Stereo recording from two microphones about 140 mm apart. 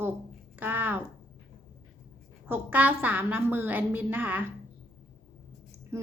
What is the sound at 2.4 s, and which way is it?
A woman's voice, 15° right (ahead or behind).